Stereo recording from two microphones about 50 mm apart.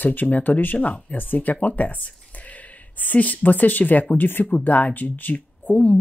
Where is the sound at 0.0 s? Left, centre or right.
Left.